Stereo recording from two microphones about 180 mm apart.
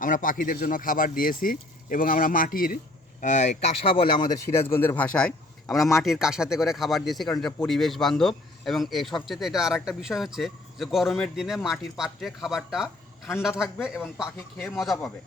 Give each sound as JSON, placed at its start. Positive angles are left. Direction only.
{"t": 0.0, "sound": "speech", "side_deg": 50}
{"t": 4.5, "sound": "speech", "side_deg": 15}